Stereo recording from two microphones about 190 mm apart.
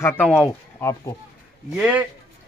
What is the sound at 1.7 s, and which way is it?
Speech, 5° right (ahead or behind).